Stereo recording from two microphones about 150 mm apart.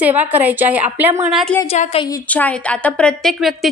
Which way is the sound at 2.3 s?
10° left (ahead or behind).